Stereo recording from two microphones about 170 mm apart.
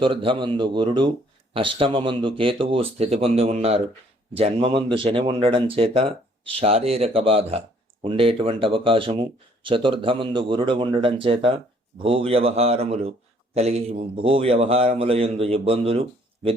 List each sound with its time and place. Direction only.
0.0 s a man's voice: 30° right (ahead or behind)